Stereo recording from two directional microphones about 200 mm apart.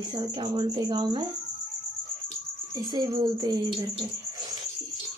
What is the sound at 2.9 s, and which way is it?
Speech, 20° right (ahead or behind).